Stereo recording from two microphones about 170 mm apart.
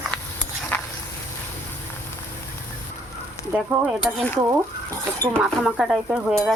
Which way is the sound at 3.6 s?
5° right (ahead or behind).